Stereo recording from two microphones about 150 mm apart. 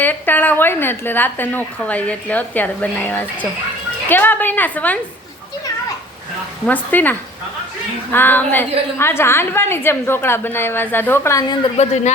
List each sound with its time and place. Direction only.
0.0 s a woman's voice: 10° left (ahead or behind)
6.7 s a woman's voice: 10° left (ahead or behind)
11.8 s speech: 50° left (ahead or behind)